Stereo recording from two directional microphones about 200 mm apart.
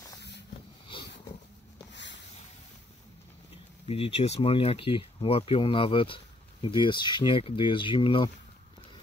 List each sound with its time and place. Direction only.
3.8 s speech: 30° left (ahead or behind)